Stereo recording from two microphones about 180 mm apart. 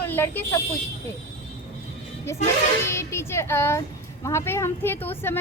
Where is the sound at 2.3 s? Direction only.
15° left (ahead or behind).